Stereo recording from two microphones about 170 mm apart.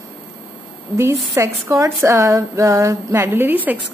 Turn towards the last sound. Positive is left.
turn(degrees=-10)  # may be behind; listen again after turning